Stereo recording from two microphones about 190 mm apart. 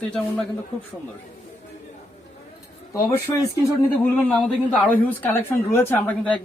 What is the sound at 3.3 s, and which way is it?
Speech, 15° left (ahead or behind).